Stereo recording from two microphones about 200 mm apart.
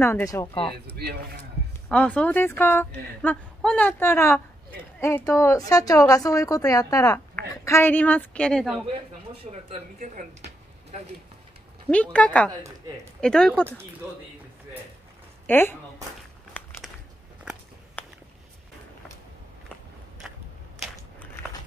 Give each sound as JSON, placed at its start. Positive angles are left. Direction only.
{"t": 0.0, "sound": "a woman's voice", "side_deg": 15}
{"t": 0.9, "sound": "a man's voice", "side_deg": -55}
{"t": 1.9, "sound": "a woman's voice", "side_deg": 5}
{"t": 9.5, "sound": "speech", "side_deg": -30}
{"t": 11.9, "sound": "a woman's voice", "side_deg": 5}
{"t": 15.4, "sound": "speech", "side_deg": 10}